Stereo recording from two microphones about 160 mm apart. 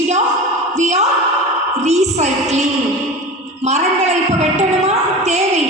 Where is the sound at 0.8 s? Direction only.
45° right (ahead or behind).